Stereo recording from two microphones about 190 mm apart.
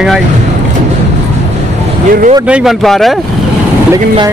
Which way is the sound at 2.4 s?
5° right (ahead or behind).